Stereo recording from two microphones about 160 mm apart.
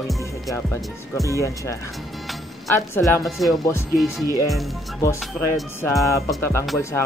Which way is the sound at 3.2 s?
Centre (ahead or behind).